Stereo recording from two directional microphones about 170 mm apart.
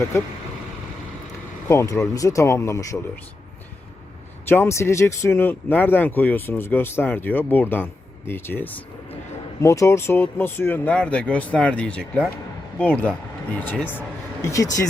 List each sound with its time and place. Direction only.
0.1 s speech: 15° left (ahead or behind)
1.6 s speech: 15° left (ahead or behind)
4.4 s speech: 15° left (ahead or behind)